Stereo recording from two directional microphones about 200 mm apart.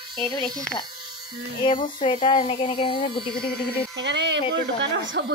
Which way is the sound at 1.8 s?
25° left (ahead or behind).